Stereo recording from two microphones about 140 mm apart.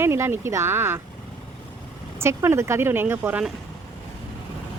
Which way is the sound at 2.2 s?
20° right (ahead or behind).